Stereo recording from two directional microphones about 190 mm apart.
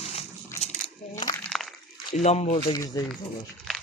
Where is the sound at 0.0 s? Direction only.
30° left (ahead or behind).